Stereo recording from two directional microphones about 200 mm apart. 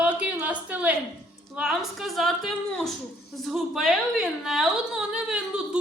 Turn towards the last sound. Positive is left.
turn(degrees=-5)  # may be behind; listen again after turning